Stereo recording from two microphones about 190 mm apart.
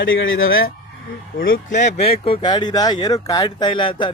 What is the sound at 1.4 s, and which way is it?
Speech, 50° left (ahead or behind).